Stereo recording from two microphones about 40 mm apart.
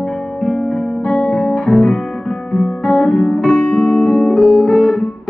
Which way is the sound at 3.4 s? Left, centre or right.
Left.